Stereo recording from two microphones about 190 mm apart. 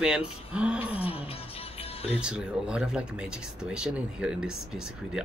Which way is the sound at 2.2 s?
5° right (ahead or behind).